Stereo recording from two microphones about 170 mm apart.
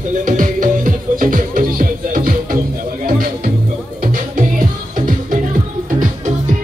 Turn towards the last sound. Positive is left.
turn(degrees=-50)  # may be behind; listen again after turning